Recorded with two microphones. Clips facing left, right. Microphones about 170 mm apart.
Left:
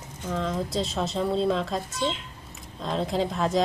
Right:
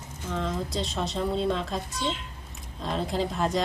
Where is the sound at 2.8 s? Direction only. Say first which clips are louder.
Left 2 dB; centre (ahead or behind).